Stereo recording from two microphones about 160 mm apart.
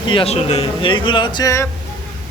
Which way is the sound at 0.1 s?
35° left (ahead or behind).